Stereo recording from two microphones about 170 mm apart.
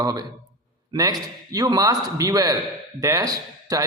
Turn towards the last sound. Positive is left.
turn(degrees=-20)  # may be behind; listen again after turning